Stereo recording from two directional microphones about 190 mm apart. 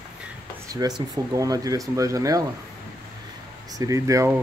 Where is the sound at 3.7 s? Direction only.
15° right (ahead or behind).